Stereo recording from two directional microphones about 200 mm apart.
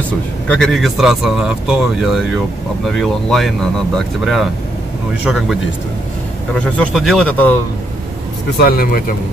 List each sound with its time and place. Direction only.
0.5 s speech: centre (ahead or behind)
6.6 s speech: 5° left (ahead or behind)
8.5 s speech: 50° left (ahead or behind)